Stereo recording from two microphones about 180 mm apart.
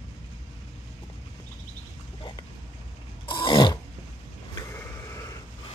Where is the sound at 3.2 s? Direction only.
25° left (ahead or behind).